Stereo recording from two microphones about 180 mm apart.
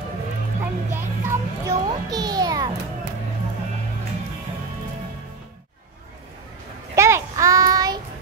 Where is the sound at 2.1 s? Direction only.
20° right (ahead or behind).